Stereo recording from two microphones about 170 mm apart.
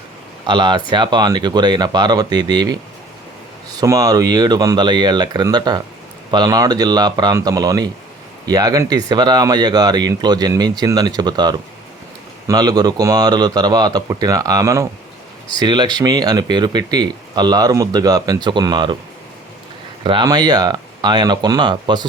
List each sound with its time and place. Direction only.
0.4 s speech: 30° right (ahead or behind)
3.8 s speech: 20° right (ahead or behind)
20.1 s speech: 25° right (ahead or behind)